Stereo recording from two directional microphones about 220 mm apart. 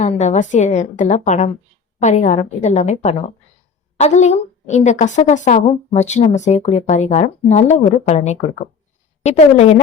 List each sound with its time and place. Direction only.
0.0 s a woman's voice: 30° left (ahead or behind)